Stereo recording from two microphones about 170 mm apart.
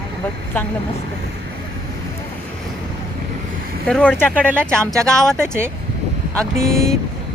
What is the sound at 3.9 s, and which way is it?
Speech, 5° left (ahead or behind).